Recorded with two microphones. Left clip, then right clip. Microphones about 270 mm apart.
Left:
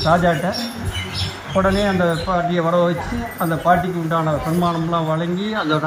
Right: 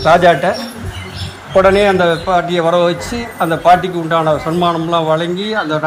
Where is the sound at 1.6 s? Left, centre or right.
Right.